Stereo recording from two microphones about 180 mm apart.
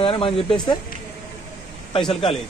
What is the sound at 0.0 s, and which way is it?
Speech, 30° left (ahead or behind).